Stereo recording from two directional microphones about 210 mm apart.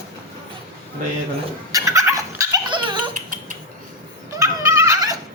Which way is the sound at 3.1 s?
40° right (ahead or behind).